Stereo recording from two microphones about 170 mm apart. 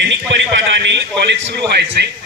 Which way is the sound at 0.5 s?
90° right.